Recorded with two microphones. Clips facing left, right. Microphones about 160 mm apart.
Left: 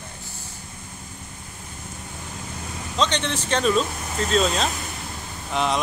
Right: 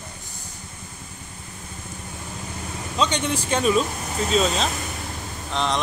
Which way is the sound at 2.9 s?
10° right (ahead or behind).